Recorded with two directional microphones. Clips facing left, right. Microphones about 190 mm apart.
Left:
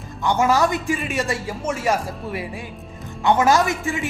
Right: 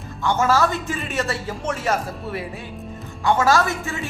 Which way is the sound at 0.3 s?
15° left (ahead or behind).